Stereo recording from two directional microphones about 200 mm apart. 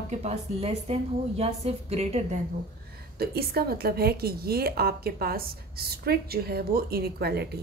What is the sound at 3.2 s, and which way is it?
A woman's voice, 50° right (ahead or behind).